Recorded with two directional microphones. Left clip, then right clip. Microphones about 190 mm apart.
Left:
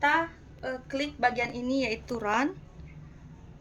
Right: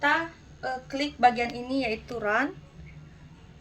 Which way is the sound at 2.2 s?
60° left (ahead or behind).